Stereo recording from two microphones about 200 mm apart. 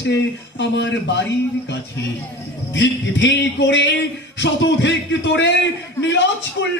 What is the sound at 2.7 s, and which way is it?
A man's voice, 60° left (ahead or behind).